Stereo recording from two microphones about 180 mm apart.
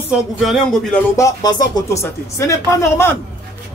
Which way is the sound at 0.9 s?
15° left (ahead or behind).